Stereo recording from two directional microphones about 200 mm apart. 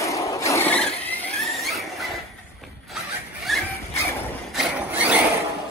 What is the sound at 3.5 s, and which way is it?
Zipper, centre (ahead or behind).